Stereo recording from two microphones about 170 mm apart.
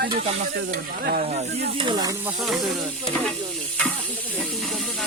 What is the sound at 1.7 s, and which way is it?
Snake, 25° right (ahead or behind).